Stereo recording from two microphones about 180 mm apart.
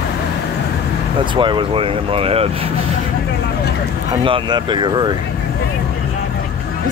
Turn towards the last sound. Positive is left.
turn(degrees=-25)  # may be behind; listen again after turning